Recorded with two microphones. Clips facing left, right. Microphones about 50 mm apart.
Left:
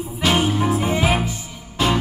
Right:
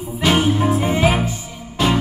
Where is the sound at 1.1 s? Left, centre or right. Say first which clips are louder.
Right 2 dB; right.